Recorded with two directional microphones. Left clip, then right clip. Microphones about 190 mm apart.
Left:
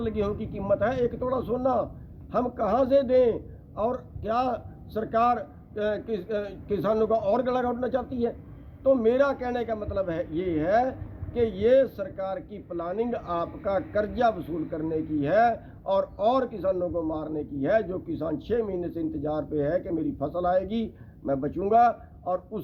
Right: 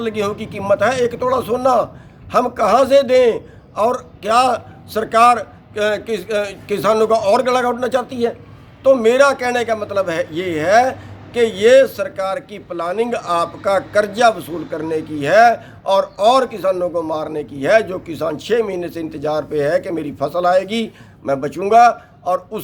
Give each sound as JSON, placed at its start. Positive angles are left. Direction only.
{"t": 0.0, "sound": "a man's voice", "side_deg": -10}